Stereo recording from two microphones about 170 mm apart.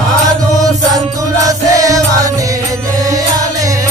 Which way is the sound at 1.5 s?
20° right (ahead or behind).